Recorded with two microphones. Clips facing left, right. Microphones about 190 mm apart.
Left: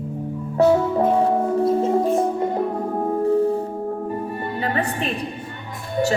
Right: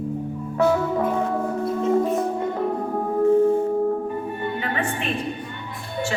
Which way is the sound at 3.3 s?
35° left (ahead or behind).